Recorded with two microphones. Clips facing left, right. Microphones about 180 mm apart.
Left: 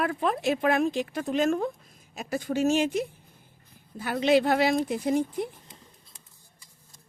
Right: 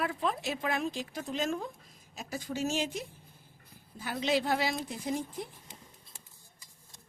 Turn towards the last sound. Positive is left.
turn(degrees=60)  # may be behind; listen again after turning